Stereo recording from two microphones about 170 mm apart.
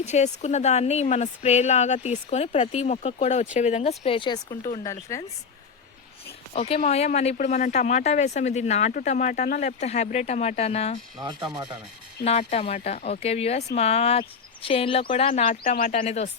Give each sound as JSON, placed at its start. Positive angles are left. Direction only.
{"t": 0.0, "sound": "speech", "side_deg": 40}
{"t": 4.7, "sound": "speech", "side_deg": 20}
{"t": 6.5, "sound": "speech", "side_deg": 35}
{"t": 11.2, "sound": "speech", "side_deg": -25}
{"t": 12.2, "sound": "speech", "side_deg": 35}
{"t": 15.6, "sound": "speech", "side_deg": 55}
{"t": 16.0, "sound": "speech", "side_deg": 40}